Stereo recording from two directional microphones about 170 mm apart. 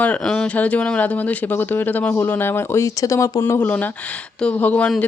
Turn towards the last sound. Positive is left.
turn(degrees=5)  # may be behind; listen again after turning